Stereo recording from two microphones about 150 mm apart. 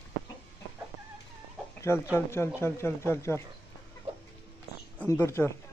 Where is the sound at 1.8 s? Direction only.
20° left (ahead or behind).